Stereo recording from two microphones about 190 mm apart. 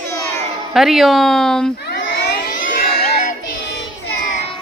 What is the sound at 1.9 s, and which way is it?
Crowd, 60° left (ahead or behind).